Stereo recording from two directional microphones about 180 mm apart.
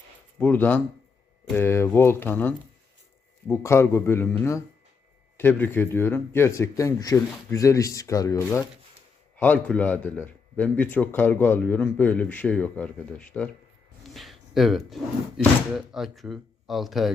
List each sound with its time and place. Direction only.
0.3 s speech: 10° left (ahead or behind)
9.4 s speech: 10° left (ahead or behind)
14.0 s a sound: centre (ahead or behind)
15.7 s speech: centre (ahead or behind)